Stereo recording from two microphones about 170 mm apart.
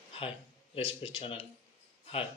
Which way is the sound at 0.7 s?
30° left (ahead or behind).